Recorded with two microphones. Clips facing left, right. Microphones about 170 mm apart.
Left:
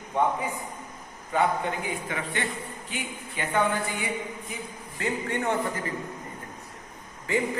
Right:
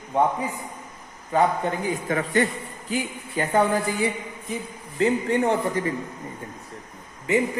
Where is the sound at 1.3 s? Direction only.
40° right (ahead or behind).